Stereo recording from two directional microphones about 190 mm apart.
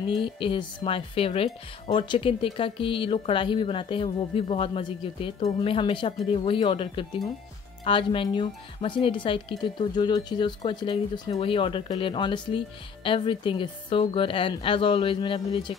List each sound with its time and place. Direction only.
0.2 s speech: 25° left (ahead or behind)